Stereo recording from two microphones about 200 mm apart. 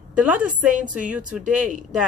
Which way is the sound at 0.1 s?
5° right (ahead or behind).